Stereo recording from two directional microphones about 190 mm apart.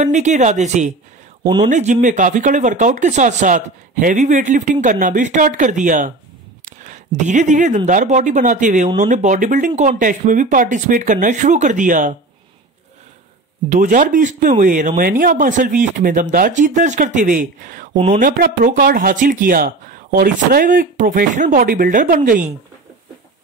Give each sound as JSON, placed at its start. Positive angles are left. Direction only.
{"t": 0.0, "sound": "speech", "side_deg": -40}
{"t": 13.7, "sound": "speech", "side_deg": -45}
{"t": 17.9, "sound": "speech", "side_deg": -30}
{"t": 18.2, "sound": "speech", "side_deg": -45}